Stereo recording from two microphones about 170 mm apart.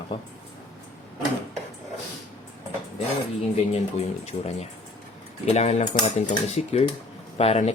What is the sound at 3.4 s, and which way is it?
Speech, 40° left (ahead or behind).